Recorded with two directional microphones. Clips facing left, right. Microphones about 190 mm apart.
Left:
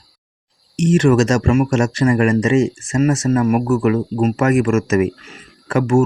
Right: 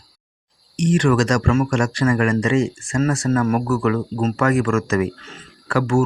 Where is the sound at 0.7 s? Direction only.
25° left (ahead or behind).